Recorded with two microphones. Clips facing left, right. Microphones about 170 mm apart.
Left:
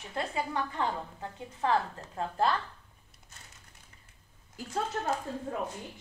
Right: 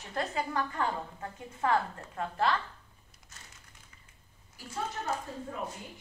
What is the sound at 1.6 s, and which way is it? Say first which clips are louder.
Speech: even; 25° left (ahead or behind).